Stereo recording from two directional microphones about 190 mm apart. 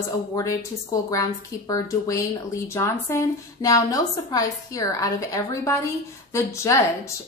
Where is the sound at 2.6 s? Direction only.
15° left (ahead or behind).